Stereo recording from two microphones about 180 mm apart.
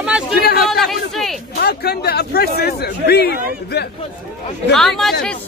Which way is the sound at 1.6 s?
60° left (ahead or behind).